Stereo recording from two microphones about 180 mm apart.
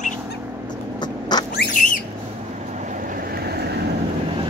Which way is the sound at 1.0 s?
25° left (ahead or behind).